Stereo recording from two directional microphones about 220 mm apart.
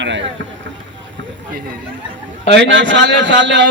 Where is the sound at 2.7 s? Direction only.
55° right (ahead or behind).